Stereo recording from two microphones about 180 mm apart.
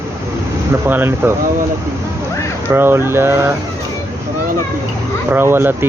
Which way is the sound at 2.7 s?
15° right (ahead or behind).